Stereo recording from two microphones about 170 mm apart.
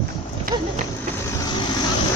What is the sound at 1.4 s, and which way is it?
Vehicle, 25° left (ahead or behind).